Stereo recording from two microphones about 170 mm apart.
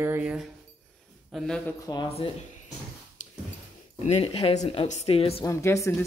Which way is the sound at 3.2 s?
45° left (ahead or behind).